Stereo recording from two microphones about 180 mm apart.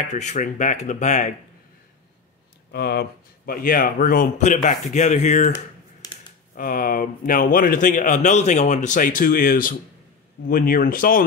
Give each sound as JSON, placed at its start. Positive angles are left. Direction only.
{"t": 0.1, "sound": "speech", "side_deg": 40}
{"t": 2.7, "sound": "speech", "side_deg": 60}
{"t": 6.0, "sound": "a sound", "side_deg": 20}
{"t": 6.5, "sound": "speech", "side_deg": 50}